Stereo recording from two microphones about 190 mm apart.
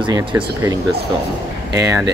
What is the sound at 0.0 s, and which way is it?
Speech, 20° right (ahead or behind).